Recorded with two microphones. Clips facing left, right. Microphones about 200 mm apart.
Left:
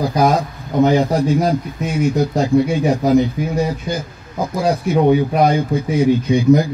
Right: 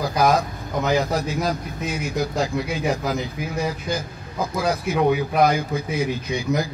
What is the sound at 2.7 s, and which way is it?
Speech, 30° left (ahead or behind).